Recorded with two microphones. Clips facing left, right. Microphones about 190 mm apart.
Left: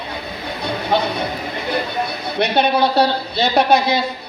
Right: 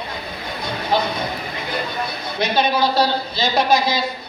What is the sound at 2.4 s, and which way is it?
Speech, 65° left (ahead or behind).